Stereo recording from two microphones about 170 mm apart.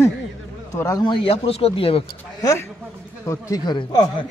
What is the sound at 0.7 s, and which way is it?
Speech, 20° left (ahead or behind).